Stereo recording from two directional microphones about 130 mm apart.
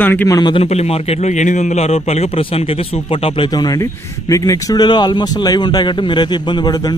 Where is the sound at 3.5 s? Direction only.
30° left (ahead or behind).